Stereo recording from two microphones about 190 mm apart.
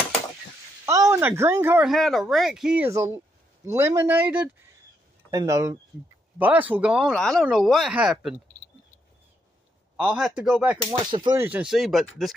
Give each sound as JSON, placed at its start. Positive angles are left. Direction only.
{"t": 0.8, "sound": "speech", "side_deg": -15}
{"t": 1.9, "sound": "a man's voice", "side_deg": 0}
{"t": 9.9, "sound": "speech", "side_deg": -5}
{"t": 10.9, "sound": "speech", "side_deg": -25}
{"t": 11.3, "sound": "speech", "side_deg": -10}